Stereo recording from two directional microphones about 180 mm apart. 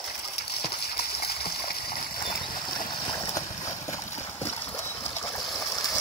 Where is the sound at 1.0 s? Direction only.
60° left (ahead or behind).